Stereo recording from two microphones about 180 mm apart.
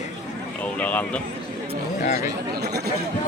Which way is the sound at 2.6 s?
60° right (ahead or behind).